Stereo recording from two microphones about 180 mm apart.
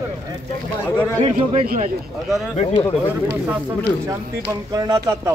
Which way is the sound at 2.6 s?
30° left (ahead or behind).